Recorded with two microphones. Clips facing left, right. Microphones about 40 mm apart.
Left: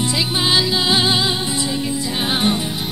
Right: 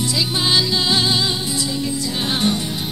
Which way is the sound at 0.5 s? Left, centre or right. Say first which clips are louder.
Left 1 dB; centre.